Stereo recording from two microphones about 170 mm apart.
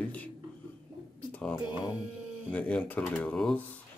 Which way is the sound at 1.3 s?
5° left (ahead or behind).